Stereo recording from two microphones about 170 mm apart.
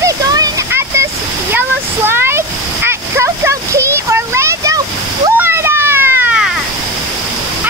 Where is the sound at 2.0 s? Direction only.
15° right (ahead or behind).